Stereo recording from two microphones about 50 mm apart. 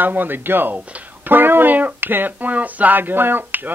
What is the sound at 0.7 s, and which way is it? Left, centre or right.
Speech, right.